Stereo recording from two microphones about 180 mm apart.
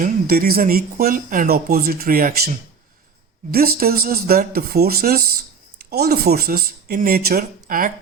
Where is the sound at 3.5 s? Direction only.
55° right (ahead or behind).